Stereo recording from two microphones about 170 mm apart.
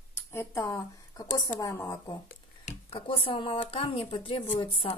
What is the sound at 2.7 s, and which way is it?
Speech, 35° left (ahead or behind).